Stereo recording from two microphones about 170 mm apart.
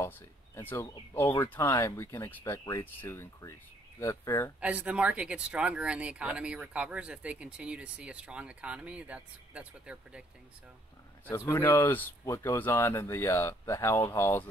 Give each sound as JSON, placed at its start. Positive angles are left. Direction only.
{"t": 0.6, "sound": "speech", "side_deg": 15}
{"t": 4.6, "sound": "speech", "side_deg": -10}
{"t": 11.2, "sound": "speech", "side_deg": 15}